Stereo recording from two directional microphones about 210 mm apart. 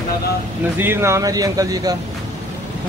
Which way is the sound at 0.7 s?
10° right (ahead or behind).